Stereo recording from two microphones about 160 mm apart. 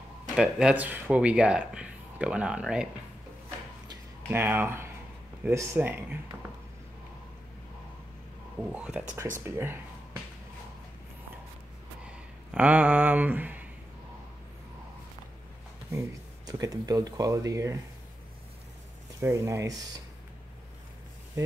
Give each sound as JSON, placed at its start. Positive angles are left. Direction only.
{"t": 0.4, "sound": "speech", "side_deg": -5}
{"t": 3.9, "sound": "a sound", "side_deg": -15}
{"t": 5.4, "sound": "speech", "side_deg": -20}
{"t": 8.7, "sound": "speech", "side_deg": -10}
{"t": 12.4, "sound": "speech", "side_deg": -10}
{"t": 15.9, "sound": "speech", "side_deg": -20}
{"t": 19.1, "sound": "speech", "side_deg": -15}